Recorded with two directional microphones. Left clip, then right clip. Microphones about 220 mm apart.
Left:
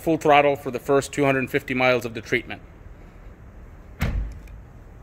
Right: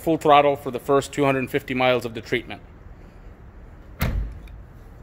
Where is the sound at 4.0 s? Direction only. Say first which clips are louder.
Right 2 dB; 25° right (ahead or behind).